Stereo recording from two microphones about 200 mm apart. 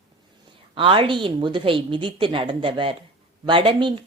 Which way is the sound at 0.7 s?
25° right (ahead or behind).